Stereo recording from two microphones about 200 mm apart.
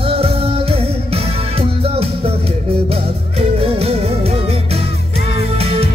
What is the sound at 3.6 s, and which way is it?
Music, 30° right (ahead or behind).